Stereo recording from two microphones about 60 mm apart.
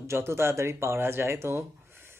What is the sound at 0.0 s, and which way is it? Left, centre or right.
Speech, right.